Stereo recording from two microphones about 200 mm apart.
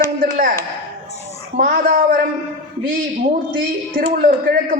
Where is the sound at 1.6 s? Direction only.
45° right (ahead or behind).